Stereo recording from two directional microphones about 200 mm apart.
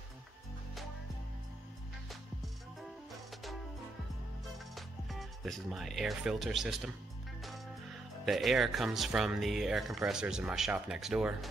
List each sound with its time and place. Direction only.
2.0 s music: centre (ahead or behind)
4.7 s speech: centre (ahead or behind)
8.3 s speech: centre (ahead or behind)